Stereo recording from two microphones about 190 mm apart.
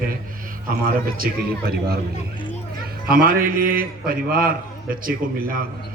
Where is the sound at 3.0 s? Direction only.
50° right (ahead or behind).